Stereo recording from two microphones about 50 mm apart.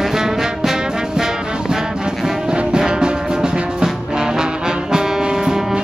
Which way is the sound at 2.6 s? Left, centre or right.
Centre.